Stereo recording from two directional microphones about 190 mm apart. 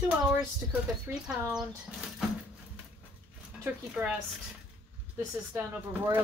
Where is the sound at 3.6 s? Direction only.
10° right (ahead or behind).